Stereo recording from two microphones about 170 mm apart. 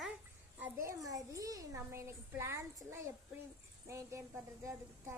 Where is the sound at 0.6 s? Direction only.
15° right (ahead or behind).